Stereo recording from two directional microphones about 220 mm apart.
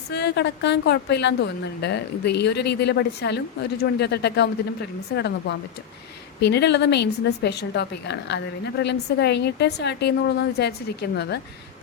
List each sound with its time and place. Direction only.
0.1 s a woman's voice: 50° left (ahead or behind)